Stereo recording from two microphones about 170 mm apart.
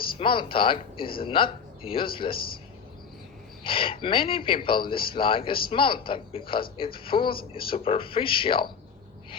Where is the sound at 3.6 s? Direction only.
30° left (ahead or behind).